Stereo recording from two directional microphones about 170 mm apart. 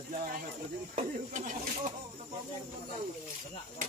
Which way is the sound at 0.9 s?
45° right (ahead or behind).